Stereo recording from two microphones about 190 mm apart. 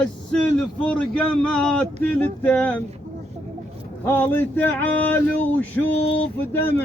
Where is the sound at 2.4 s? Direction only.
10° left (ahead or behind).